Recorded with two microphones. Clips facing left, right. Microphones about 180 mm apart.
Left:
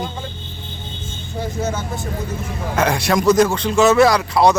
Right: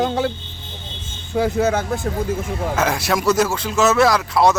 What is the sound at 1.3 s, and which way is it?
Speech, 70° right (ahead or behind).